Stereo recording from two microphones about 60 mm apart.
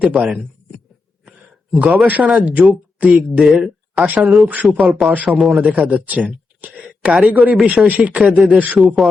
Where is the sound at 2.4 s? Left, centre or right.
Right.